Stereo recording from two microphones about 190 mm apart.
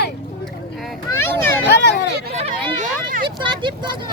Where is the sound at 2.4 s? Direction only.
30° right (ahead or behind).